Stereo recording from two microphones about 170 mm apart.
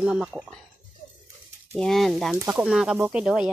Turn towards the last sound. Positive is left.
turn(degrees=-5)  # may be behind; listen again after turning